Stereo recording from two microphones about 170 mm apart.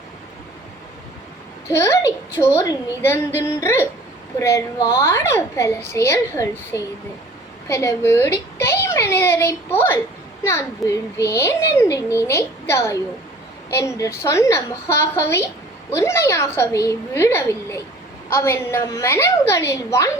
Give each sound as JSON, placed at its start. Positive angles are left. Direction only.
{"t": 1.7, "sound": "a child's voice", "side_deg": 15}